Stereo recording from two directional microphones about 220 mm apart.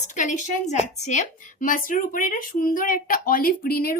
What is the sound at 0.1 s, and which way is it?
A woman's voice, 35° left (ahead or behind).